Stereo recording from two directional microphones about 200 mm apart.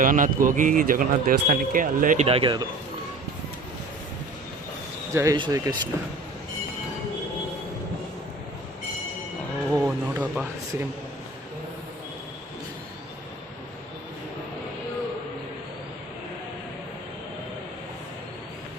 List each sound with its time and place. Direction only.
0.0 s speech: 40° right (ahead or behind)
2.2 s speech: 25° right (ahead or behind)
5.1 s speech: 15° right (ahead or behind)
9.7 s a sound: 10° right (ahead or behind)